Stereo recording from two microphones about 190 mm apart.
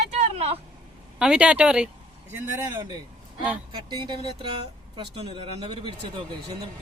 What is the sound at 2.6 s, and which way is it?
Speech, 15° right (ahead or behind).